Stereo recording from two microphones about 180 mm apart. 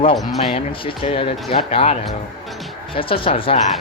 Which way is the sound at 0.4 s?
30° left (ahead or behind).